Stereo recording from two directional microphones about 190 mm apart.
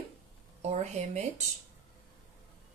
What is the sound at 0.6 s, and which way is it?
Speech, 35° right (ahead or behind).